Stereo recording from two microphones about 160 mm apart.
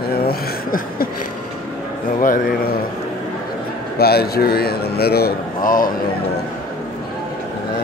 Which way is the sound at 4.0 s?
75° left (ahead or behind).